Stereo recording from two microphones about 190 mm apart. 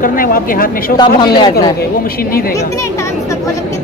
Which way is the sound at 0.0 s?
50° left (ahead or behind).